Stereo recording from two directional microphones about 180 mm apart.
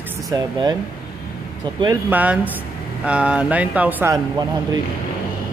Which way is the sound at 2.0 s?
10° right (ahead or behind).